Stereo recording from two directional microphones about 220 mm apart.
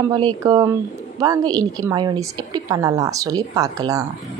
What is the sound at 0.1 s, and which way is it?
A woman's voice, 20° right (ahead or behind).